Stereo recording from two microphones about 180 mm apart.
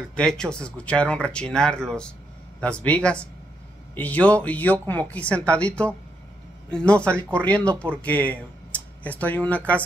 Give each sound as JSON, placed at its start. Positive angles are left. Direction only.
{"t": 0.1, "sound": "speech", "side_deg": 5}